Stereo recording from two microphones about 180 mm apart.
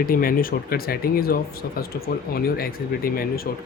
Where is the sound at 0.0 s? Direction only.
50° left (ahead or behind).